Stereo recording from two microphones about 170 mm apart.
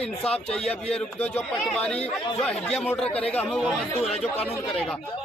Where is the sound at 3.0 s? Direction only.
35° left (ahead or behind).